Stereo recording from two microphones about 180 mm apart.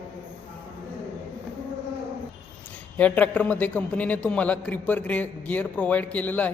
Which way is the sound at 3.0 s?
5° left (ahead or behind).